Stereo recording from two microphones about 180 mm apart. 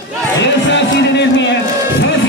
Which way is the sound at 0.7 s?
80° left.